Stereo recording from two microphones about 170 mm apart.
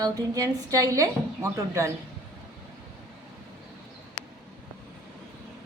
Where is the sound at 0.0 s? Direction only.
20° right (ahead or behind).